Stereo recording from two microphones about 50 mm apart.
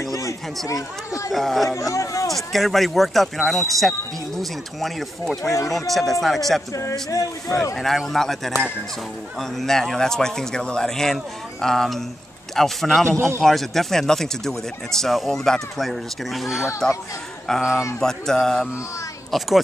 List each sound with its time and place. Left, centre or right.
1.3 s speech: centre
1.7 s speech: left
2.2 s speech: centre
6.7 s speech: left
7.7 s speech: centre
17.5 s speech: centre
19.3 s speech: centre